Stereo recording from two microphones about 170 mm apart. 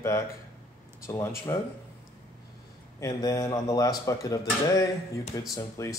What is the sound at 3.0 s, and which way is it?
Speech, 20° left (ahead or behind).